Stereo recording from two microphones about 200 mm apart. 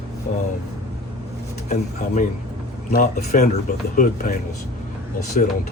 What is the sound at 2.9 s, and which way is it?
Speech, 45° left (ahead or behind).